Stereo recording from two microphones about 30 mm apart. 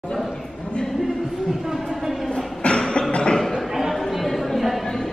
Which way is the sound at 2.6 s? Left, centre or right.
Left.